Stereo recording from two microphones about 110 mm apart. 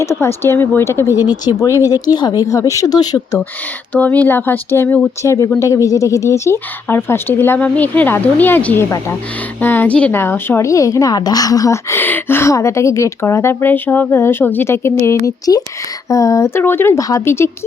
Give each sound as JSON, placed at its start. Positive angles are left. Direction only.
{"t": 0.0, "sound": "speech", "side_deg": 25}
{"t": 1.2, "sound": "speech", "side_deg": 40}
{"t": 3.9, "sound": "speech", "side_deg": 15}